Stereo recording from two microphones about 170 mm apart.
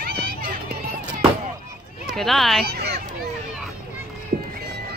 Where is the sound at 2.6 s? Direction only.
70° right (ahead or behind).